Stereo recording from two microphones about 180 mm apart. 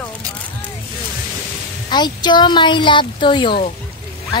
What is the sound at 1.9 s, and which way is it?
Speech, 25° left (ahead or behind).